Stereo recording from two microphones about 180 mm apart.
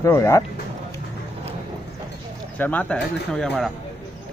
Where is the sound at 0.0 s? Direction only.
15° left (ahead or behind).